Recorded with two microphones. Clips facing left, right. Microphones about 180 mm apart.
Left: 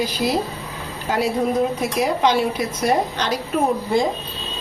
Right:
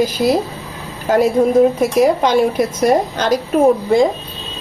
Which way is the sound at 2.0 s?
45° right (ahead or behind).